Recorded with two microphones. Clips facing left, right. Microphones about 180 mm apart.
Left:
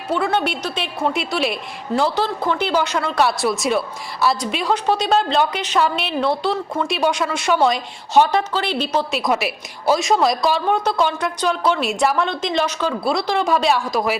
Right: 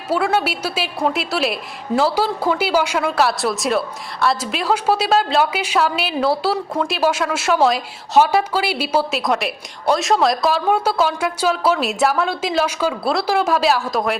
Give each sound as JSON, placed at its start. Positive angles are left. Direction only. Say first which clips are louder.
{"t": 0.1, "sound": "speech", "louder": "right 1 dB", "side_deg": -5}